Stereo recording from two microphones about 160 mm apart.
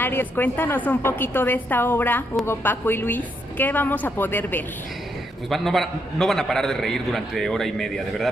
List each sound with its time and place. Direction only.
0.0 s a woman's voice: 10° left (ahead or behind)
5.5 s a man's voice: centre (ahead or behind)